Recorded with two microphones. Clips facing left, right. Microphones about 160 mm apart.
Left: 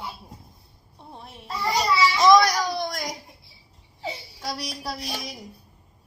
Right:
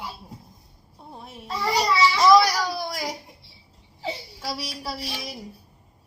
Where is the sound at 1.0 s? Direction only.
Centre (ahead or behind).